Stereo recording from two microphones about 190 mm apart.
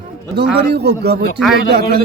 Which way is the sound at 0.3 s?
60° right (ahead or behind).